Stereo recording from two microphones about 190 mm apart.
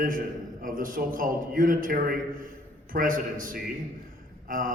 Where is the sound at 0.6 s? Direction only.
45° right (ahead or behind).